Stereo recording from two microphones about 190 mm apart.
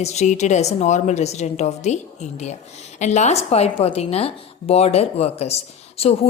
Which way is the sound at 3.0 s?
35° left (ahead or behind).